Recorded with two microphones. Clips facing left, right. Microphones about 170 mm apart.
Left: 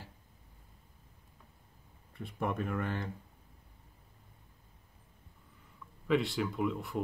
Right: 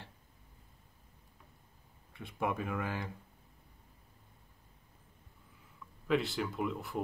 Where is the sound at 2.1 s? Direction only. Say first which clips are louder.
Even; 5° right (ahead or behind).